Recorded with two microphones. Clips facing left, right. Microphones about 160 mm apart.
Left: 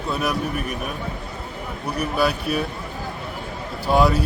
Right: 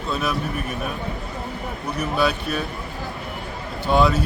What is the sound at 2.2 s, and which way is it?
Speech, 10° left (ahead or behind).